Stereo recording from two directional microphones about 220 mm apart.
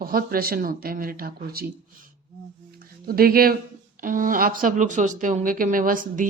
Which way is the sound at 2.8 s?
40° right (ahead or behind).